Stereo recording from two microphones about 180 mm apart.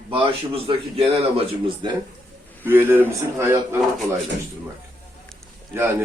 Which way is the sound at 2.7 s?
10° right (ahead or behind).